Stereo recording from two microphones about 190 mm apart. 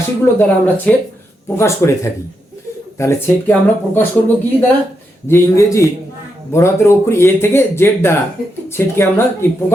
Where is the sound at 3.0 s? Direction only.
15° left (ahead or behind).